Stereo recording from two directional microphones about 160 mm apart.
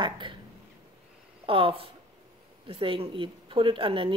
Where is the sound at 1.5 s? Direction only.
35° right (ahead or behind).